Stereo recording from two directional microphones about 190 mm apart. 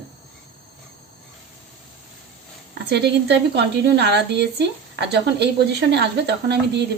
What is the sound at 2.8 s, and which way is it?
A woman's voice, 60° right (ahead or behind).